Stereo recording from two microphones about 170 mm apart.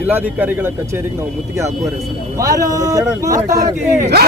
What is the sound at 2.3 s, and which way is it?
Speech, 20° right (ahead or behind).